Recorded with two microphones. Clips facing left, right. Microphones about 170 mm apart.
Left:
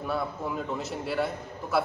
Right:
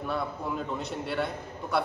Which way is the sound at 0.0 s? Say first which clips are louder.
Left 1 dB; centre (ahead or behind).